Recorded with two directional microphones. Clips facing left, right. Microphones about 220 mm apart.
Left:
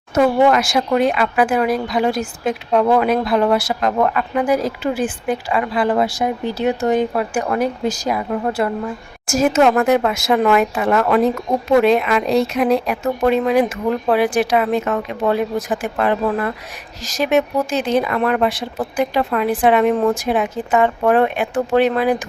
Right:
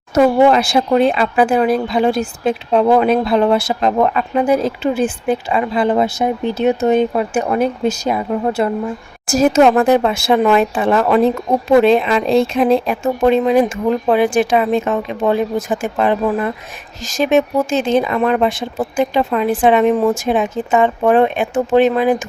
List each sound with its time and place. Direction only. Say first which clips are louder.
0.1 s speech: right 3 dB; 30° right (ahead or behind)
9.2 s speech: right 3 dB; 35° right (ahead or behind)
16.2 s speech: right 2 dB; 15° right (ahead or behind)
17.2 s speech: right 3 dB; 25° right (ahead or behind)